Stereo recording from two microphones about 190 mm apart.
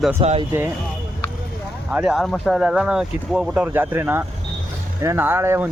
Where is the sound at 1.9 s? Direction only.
5° right (ahead or behind).